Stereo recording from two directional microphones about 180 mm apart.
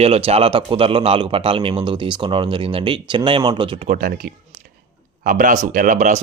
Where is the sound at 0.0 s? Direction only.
35° right (ahead or behind).